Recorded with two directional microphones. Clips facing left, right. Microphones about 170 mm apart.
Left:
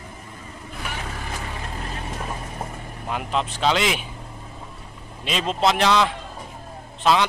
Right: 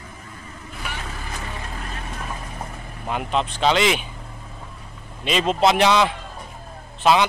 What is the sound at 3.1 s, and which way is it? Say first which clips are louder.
Speech: right 2 dB; centre (ahead or behind).